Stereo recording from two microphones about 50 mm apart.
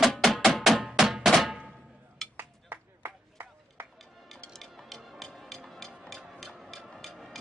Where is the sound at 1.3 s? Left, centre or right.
Centre.